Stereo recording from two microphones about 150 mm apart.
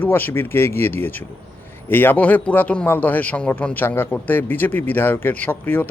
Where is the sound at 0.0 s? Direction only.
15° left (ahead or behind).